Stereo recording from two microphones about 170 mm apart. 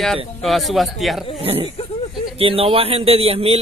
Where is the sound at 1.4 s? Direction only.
35° right (ahead or behind).